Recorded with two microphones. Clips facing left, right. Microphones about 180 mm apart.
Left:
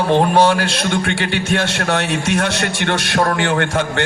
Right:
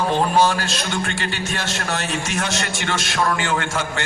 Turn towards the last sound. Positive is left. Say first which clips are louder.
# left 6 dB
turn(degrees=60)  # may be behind; listen again after turning